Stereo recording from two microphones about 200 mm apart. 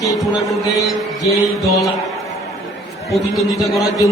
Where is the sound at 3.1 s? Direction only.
Centre (ahead or behind).